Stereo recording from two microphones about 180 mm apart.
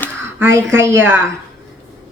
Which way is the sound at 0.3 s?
15° right (ahead or behind).